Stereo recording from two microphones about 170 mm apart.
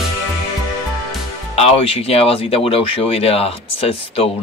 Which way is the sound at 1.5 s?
35° left (ahead or behind).